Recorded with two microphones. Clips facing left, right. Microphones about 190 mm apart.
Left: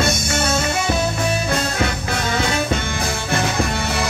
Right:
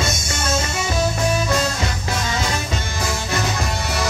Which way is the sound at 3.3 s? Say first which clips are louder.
Left 6 dB; 55° left (ahead or behind).